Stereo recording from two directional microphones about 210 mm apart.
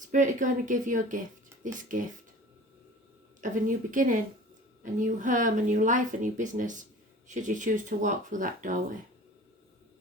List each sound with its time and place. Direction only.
0.0 s speech: 35° right (ahead or behind)
3.4 s speech: 40° right (ahead or behind)